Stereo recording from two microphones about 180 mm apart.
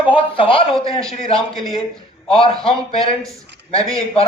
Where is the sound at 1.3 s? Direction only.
Centre (ahead or behind).